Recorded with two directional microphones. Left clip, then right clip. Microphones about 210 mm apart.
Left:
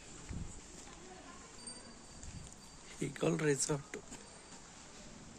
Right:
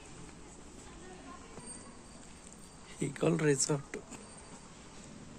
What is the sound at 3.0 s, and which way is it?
Speech, 5° left (ahead or behind).